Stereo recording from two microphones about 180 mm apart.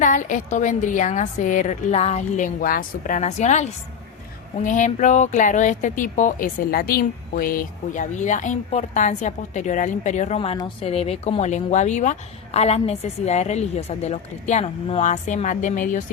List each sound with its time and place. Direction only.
0.0 s a woman's voice: 45° left (ahead or behind)